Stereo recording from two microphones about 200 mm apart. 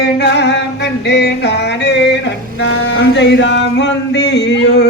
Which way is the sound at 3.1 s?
60° left (ahead or behind).